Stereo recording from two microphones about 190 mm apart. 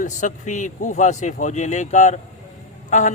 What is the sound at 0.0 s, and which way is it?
Speech, 40° left (ahead or behind).